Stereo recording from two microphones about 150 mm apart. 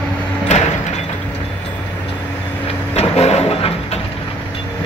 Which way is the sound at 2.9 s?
45° left (ahead or behind).